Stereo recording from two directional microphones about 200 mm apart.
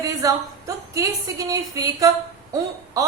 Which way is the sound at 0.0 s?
15° right (ahead or behind).